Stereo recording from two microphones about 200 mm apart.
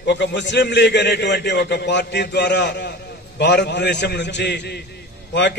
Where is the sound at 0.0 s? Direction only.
60° left (ahead or behind).